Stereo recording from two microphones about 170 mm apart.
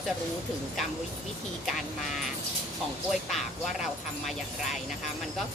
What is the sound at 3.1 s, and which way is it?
Speech, centre (ahead or behind).